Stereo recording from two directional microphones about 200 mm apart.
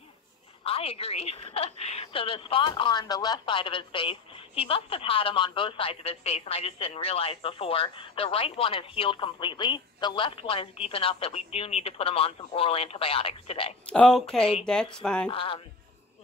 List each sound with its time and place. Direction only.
0.7 s a woman's voice: 30° left (ahead or behind)
13.8 s speech: 5° left (ahead or behind)
15.2 s a woman's voice: 25° left (ahead or behind)